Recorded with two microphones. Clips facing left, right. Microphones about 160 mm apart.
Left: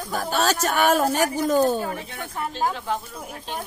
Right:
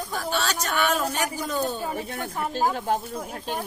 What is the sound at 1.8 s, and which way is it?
Speech, centre (ahead or behind).